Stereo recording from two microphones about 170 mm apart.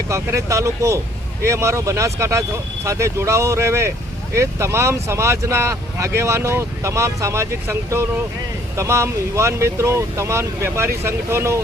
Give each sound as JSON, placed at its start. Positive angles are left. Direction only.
{"t": 0.1, "sound": "speech", "side_deg": -20}